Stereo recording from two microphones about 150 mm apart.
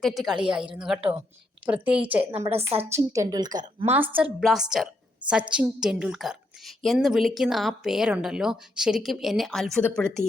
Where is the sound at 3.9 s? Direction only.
10° right (ahead or behind); by 10.2 s 5° left (ahead or behind).